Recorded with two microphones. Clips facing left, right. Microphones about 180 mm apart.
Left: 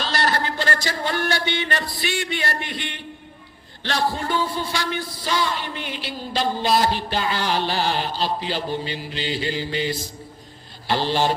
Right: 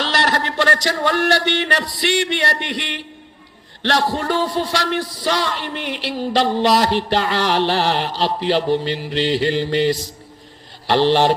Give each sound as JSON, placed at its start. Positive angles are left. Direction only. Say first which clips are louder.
{"t": 0.0, "sound": "speech", "louder": "right 3 dB", "side_deg": -75}